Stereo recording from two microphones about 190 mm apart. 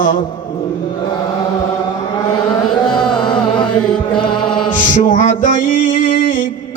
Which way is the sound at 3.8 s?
5° left (ahead or behind).